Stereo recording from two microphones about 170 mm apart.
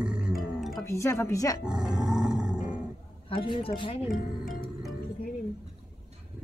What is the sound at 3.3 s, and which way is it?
Speech, 30° left (ahead or behind).